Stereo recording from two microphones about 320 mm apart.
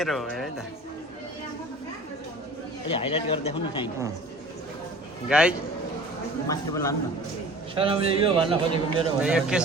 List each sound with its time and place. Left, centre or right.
0.0 s speech: centre
2.9 s speech: centre
5.3 s speech: centre
6.5 s speech: centre
7.8 s a man's voice: centre
9.2 s speech: centre